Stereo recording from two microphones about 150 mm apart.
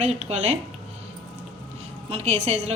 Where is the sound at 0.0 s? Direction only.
50° right (ahead or behind).